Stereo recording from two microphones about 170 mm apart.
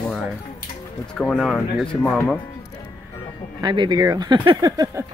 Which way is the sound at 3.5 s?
25° right (ahead or behind).